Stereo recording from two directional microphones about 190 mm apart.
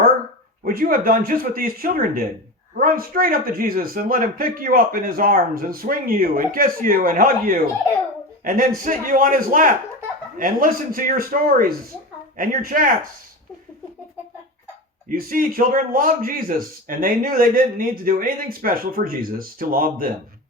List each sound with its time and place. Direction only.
0.6 s a man's voice: 50° right (ahead or behind)
8.8 s a man's voice: 45° right (ahead or behind)
15.1 s a man's voice: 50° right (ahead or behind)